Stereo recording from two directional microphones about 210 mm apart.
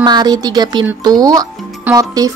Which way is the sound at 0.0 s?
20° right (ahead or behind).